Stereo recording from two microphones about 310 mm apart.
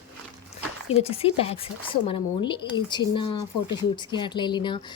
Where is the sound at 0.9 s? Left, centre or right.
Centre.